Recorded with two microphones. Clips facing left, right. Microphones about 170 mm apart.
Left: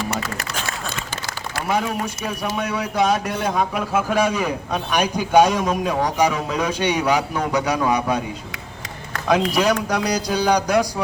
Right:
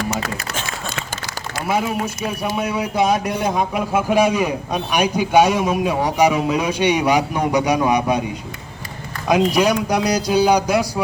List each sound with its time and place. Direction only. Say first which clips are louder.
1.6 s speech: right 2 dB; 10° right (ahead or behind)
9.2 s speech: right 2 dB; 10° right (ahead or behind)